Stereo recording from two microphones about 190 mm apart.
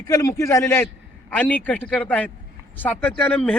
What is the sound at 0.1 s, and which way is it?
Speech, 20° left (ahead or behind).